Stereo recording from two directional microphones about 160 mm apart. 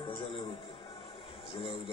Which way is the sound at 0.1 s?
35° left (ahead or behind).